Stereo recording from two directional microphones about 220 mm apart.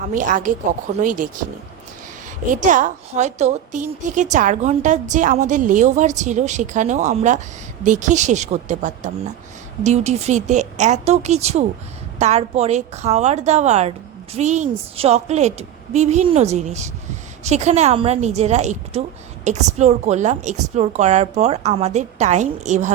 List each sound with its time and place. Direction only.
0.1 s a woman's voice: 35° right (ahead or behind)
2.5 s a woman's voice: 35° right (ahead or behind)